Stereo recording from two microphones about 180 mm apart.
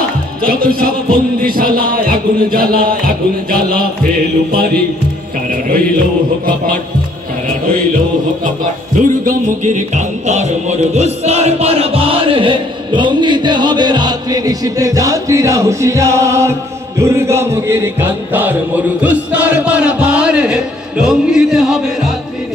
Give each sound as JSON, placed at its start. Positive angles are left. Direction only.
{"t": 0.5, "sound": "music", "side_deg": -55}
{"t": 8.9, "sound": "music", "side_deg": -45}